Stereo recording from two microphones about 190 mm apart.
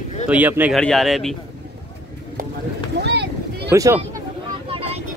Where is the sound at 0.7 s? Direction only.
Centre (ahead or behind).